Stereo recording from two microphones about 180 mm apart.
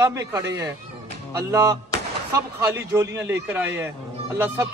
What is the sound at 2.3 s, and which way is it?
Speech, 15° right (ahead or behind).